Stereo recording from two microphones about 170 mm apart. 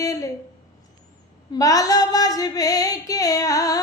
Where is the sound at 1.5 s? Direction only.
20° left (ahead or behind).